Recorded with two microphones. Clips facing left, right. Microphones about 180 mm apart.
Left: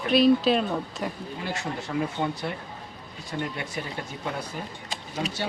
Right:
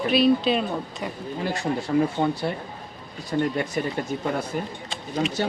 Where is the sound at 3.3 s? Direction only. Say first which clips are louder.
Right 8 dB; 40° right (ahead or behind).